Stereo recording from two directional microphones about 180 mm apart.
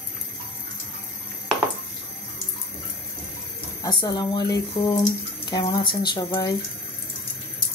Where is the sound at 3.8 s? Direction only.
25° left (ahead or behind).